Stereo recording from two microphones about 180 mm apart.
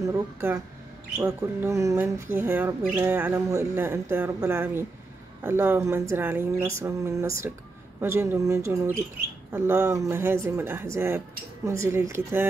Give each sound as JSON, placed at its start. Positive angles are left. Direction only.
{"t": 0.0, "sound": "speech", "side_deg": -15}